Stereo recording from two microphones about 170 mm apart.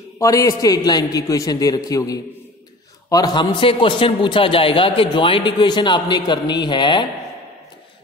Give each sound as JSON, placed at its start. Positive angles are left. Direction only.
{"t": 0.2, "sound": "a man's voice", "side_deg": 20}